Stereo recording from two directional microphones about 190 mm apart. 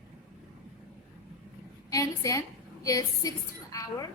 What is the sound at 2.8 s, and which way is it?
A woman's voice, 20° left (ahead or behind).